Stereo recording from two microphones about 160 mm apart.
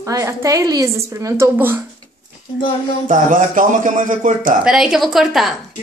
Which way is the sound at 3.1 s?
55° right (ahead or behind).